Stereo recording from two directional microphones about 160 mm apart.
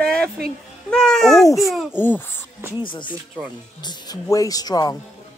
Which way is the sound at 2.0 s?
15° left (ahead or behind).